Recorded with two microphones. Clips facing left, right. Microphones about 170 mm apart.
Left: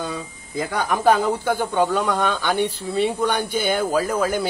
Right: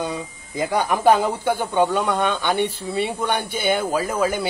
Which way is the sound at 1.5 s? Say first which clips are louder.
Right 3 dB; 15° right (ahead or behind).